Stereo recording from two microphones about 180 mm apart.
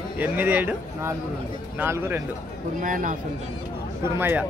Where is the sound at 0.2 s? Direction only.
10° right (ahead or behind).